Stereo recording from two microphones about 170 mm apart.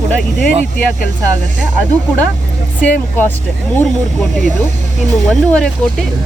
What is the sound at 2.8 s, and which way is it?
Speech, 10° left (ahead or behind).